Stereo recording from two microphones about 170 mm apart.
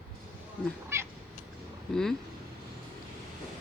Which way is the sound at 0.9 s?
15° right (ahead or behind).